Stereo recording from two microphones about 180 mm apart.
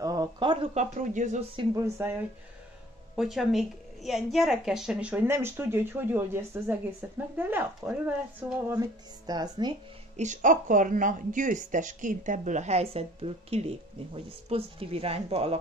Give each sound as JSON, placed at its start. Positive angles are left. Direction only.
{"t": 0.0, "sound": "speech", "side_deg": -20}
{"t": 1.8, "sound": "a woman's voice", "side_deg": -15}
{"t": 3.2, "sound": "a woman's voice", "side_deg": 0}
{"t": 10.1, "sound": "speech", "side_deg": -45}